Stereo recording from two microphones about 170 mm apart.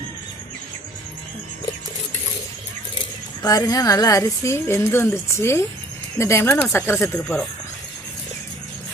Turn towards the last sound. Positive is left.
turn(degrees=5)  # may be behind; listen again after turning